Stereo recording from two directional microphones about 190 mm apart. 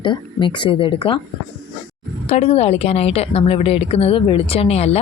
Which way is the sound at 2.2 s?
35° left (ahead or behind).